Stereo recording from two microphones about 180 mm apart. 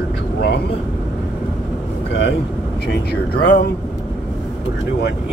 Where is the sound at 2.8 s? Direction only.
60° left (ahead or behind).